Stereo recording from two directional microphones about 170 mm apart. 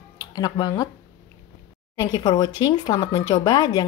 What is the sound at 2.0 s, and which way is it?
Speech, 25° left (ahead or behind).